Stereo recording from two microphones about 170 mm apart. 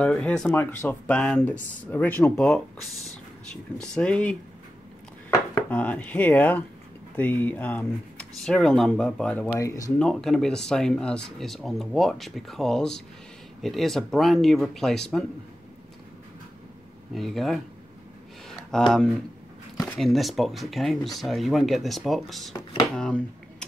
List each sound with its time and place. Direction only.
0.0 s speech: 5° left (ahead or behind)
3.9 s speech: 5° left (ahead or behind)
5.5 s speech: 10° left (ahead or behind)
9.6 s speech: 20° left (ahead or behind)
9.9 s speech: 5° left (ahead or behind)
17.1 s speech: centre (ahead or behind)
18.7 s speech: 5° left (ahead or behind)